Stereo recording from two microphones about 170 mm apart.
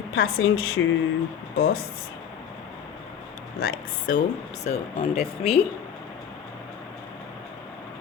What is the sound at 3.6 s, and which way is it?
Speech, 55° left (ahead or behind).